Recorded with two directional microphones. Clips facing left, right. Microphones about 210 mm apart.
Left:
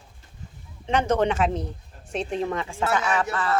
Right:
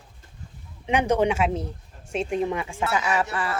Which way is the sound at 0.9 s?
15° right (ahead or behind).